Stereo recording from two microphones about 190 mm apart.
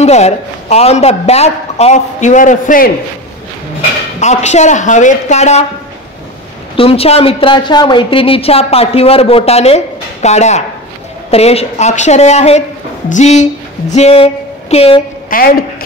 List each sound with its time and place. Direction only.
0.0 s a woman's voice: 35° left (ahead or behind)
4.2 s a woman's voice: 35° left (ahead or behind)
6.8 s a woman's voice: 30° left (ahead or behind)
15.2 s a woman's voice: 50° left (ahead or behind)